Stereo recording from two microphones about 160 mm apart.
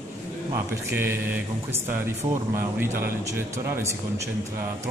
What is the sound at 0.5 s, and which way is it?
Speech, 15° right (ahead or behind).